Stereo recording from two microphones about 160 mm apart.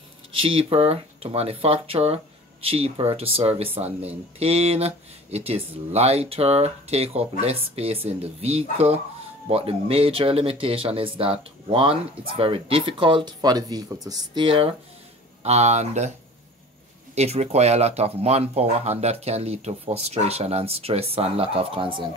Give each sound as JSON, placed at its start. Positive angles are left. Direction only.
{"t": 0.4, "sound": "speech", "side_deg": -35}
{"t": 15.4, "sound": "speech", "side_deg": -45}
{"t": 17.1, "sound": "speech", "side_deg": -45}